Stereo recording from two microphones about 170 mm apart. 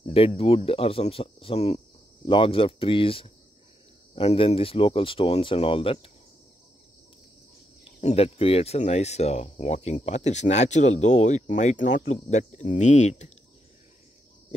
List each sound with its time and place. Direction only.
0.0 s speech: 35° left (ahead or behind)
7.8 s speech: 40° left (ahead or behind)